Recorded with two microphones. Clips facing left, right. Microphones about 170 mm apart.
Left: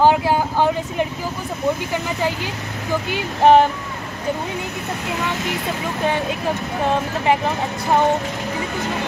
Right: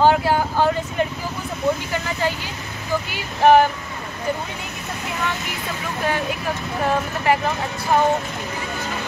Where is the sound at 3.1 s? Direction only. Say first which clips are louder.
Left 1 dB; 20° left (ahead or behind).